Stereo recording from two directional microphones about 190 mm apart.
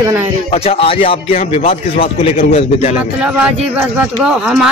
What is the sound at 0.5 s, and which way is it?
A man's voice, 30° left (ahead or behind).